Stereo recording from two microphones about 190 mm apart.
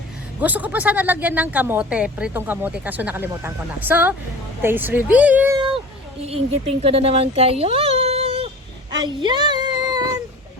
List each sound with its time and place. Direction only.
0.3 s speech: 10° right (ahead or behind)
5.5 s cat: 25° right (ahead or behind)
6.2 s speech: 30° right (ahead or behind)
8.9 s child singing: 25° right (ahead or behind)